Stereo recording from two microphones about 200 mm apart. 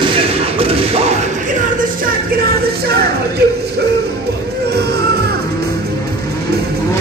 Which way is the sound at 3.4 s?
55° right (ahead or behind).